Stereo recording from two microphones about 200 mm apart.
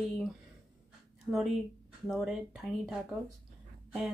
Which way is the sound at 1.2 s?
Centre (ahead or behind).